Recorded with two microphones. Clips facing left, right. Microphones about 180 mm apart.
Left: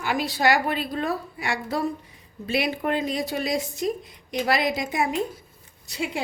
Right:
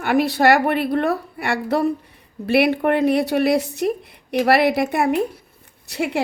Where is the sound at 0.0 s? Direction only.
60° right (ahead or behind).